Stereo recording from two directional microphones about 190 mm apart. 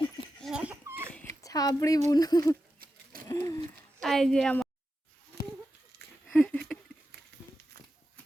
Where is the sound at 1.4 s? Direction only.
20° left (ahead or behind).